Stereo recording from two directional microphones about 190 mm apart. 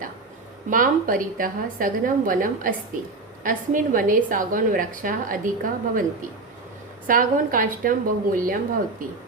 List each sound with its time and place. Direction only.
0.7 s a woman's voice: 45° right (ahead or behind)
7.1 s a woman's voice: 45° right (ahead or behind)